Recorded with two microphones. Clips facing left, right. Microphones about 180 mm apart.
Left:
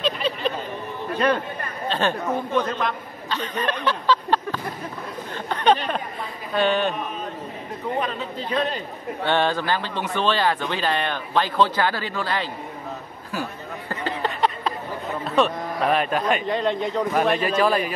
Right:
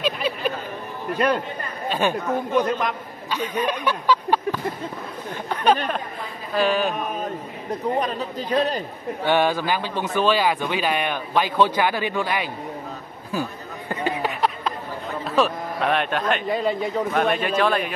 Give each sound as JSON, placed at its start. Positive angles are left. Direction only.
{"t": 0.0, "sound": "a sound", "side_deg": -10}
{"t": 1.1, "sound": "a man's voice", "side_deg": -10}
{"t": 5.5, "sound": "a sound", "side_deg": -5}
{"t": 6.5, "sound": "speech", "side_deg": 0}
{"t": 8.0, "sound": "a man's voice", "side_deg": -40}
{"t": 9.2, "sound": "a man's voice", "side_deg": -10}
{"t": 13.3, "sound": "a sound", "side_deg": -15}
{"t": 15.2, "sound": "speech", "side_deg": 0}
{"t": 16.4, "sound": "speech", "side_deg": -5}
{"t": 17.6, "sound": "speech", "side_deg": 5}